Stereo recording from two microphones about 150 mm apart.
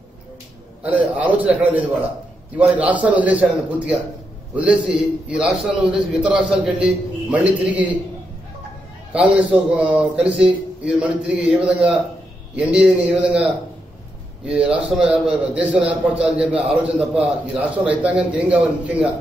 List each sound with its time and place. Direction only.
0.8 s a man's voice: 10° right (ahead or behind)
9.1 s a man's voice: 10° right (ahead or behind)
14.7 s a man's voice: 10° right (ahead or behind)